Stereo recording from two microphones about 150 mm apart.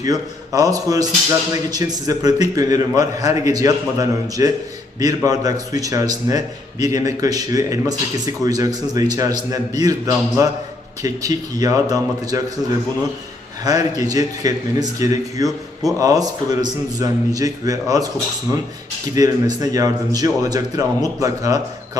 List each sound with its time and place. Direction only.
0.0 s a man's voice: 25° right (ahead or behind)
13.7 s a man's voice: 25° right (ahead or behind)
15.4 s a man's voice: centre (ahead or behind)
16.0 s a man's voice: 25° right (ahead or behind)
19.1 s a man's voice: 25° right (ahead or behind)